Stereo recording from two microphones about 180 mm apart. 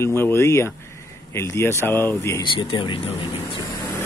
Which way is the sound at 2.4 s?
25° left (ahead or behind).